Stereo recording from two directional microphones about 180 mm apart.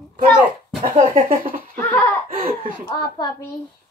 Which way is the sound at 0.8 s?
45° right (ahead or behind).